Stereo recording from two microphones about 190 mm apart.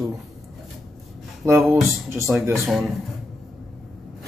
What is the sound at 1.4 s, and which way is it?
Speech, 15° right (ahead or behind).